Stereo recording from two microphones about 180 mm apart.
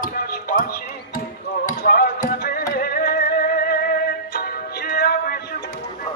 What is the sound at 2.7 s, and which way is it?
Music, 55° left (ahead or behind).